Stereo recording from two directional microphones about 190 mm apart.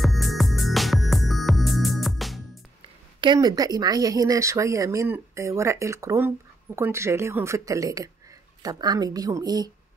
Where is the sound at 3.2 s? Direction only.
20° right (ahead or behind).